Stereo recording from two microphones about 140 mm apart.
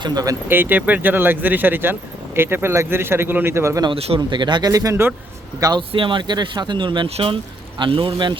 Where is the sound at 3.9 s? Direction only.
45° right (ahead or behind).